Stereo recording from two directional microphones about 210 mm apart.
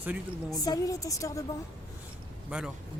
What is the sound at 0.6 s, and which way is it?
Speech, 15° left (ahead or behind).